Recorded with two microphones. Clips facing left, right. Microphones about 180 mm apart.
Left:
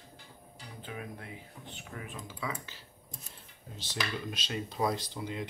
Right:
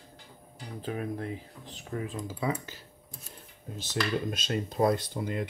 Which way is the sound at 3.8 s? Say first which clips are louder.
Right 7 dB; 45° right (ahead or behind).